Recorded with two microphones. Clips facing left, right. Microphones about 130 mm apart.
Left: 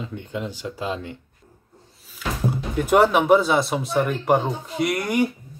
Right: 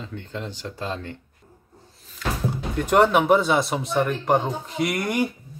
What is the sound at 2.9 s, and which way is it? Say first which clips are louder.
Speech: left 1 dB; centre (ahead or behind).